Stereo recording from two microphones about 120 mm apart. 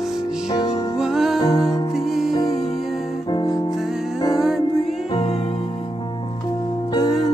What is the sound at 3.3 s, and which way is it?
Music, 35° left (ahead or behind).